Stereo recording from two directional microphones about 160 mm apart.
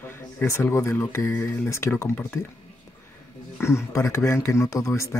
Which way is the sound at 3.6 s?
15° left (ahead or behind).